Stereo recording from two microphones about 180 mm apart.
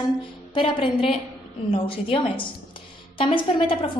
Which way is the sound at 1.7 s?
30° left (ahead or behind).